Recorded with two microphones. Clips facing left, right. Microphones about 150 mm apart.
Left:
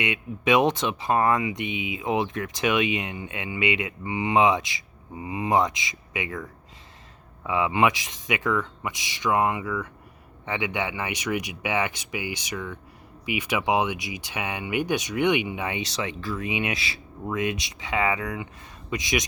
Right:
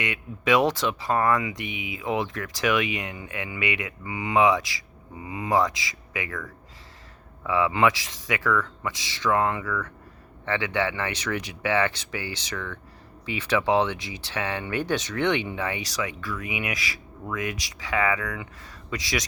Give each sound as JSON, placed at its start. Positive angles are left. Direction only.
{"t": 0.0, "sound": "speech", "side_deg": 20}